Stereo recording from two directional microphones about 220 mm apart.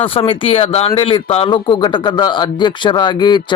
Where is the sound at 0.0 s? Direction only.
25° left (ahead or behind).